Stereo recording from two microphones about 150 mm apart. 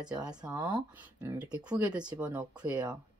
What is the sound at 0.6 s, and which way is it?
Speech, 30° right (ahead or behind).